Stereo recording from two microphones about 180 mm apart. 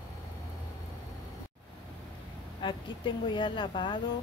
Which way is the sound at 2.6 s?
25° left (ahead or behind).